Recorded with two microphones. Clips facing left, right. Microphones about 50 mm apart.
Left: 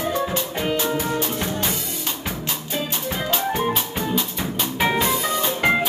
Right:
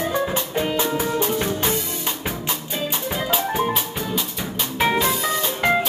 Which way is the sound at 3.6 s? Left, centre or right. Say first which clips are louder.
Even; centre.